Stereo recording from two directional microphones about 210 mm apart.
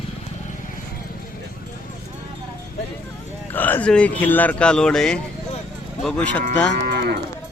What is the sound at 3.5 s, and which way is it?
Speech, 10° left (ahead or behind).